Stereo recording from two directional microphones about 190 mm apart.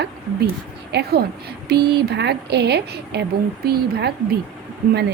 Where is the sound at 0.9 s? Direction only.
60° right (ahead or behind).